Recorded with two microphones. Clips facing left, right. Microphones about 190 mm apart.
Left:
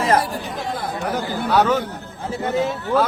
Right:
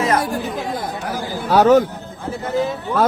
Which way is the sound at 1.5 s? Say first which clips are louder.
Right 6 dB; 40° right (ahead or behind).